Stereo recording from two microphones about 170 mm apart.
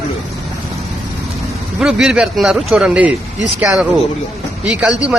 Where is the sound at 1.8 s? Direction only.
Centre (ahead or behind).